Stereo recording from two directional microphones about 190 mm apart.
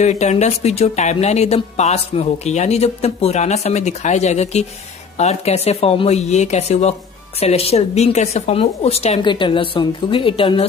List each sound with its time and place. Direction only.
0.0 s a woman's voice: 35° left (ahead or behind)